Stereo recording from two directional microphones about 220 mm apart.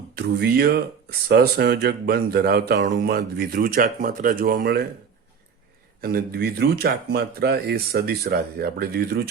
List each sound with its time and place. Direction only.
0.2 s speech: 45° right (ahead or behind)
6.0 s speech: 45° right (ahead or behind)